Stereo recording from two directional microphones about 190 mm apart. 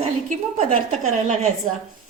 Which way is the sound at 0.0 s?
35° right (ahead or behind).